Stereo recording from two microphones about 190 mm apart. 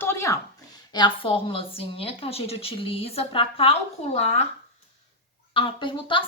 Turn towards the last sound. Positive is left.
turn(degrees=25)  # may be behind; listen again after turning